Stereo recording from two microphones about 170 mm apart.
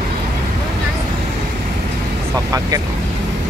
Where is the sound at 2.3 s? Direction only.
20° right (ahead or behind).